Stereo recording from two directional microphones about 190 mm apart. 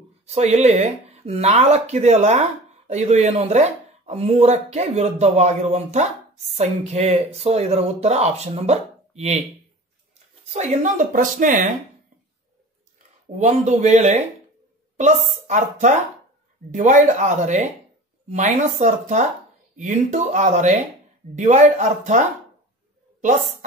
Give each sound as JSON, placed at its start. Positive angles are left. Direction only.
{"t": 0.3, "sound": "speech", "side_deg": -35}
{"t": 10.5, "sound": "speech", "side_deg": -40}
{"t": 13.4, "sound": "speech", "side_deg": -35}